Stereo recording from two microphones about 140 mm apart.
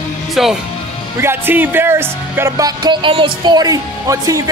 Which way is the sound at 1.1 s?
15° right (ahead or behind).